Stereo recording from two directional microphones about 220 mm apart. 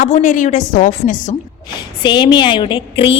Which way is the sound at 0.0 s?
35° left (ahead or behind).